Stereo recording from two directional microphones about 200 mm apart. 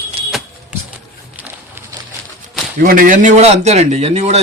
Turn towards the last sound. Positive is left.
turn(degrees=-35)  # may be behind; listen again after turning